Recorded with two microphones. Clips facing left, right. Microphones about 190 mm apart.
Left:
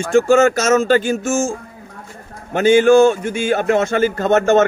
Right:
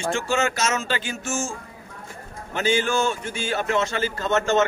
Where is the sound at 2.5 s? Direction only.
50° left (ahead or behind).